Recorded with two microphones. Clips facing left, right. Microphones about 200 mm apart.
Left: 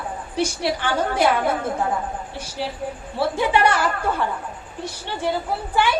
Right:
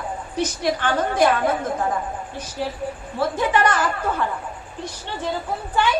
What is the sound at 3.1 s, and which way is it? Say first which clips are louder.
Speech: left 1 dB; 10° left (ahead or behind).